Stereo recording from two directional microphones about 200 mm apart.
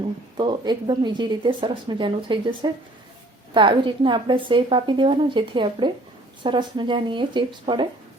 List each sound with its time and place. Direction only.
0.3 s a woman's voice: 20° right (ahead or behind)